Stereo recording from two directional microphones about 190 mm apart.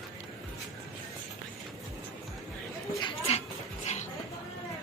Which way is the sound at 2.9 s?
30° left (ahead or behind).